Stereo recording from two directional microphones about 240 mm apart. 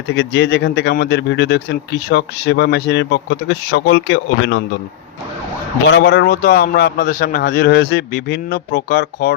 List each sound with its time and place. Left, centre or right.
0.1 s speech: left
5.8 s a man's voice: left